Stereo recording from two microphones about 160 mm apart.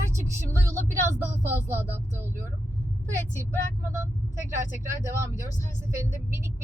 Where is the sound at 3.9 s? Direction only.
15° right (ahead or behind).